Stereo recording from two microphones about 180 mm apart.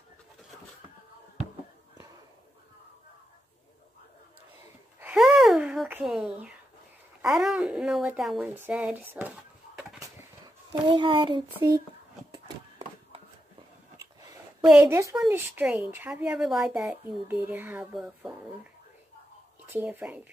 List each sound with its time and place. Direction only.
5.0 s a sound: centre (ahead or behind)
7.2 s speech: centre (ahead or behind)
10.7 s speech: 25° right (ahead or behind)
13.9 s a sound: 20° right (ahead or behind)
14.7 s speech: 10° right (ahead or behind)
19.7 s speech: 10° right (ahead or behind)